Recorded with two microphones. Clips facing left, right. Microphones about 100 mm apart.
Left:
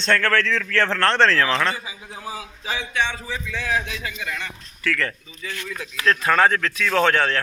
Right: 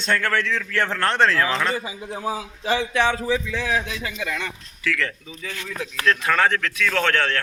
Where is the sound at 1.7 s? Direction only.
50° right (ahead or behind).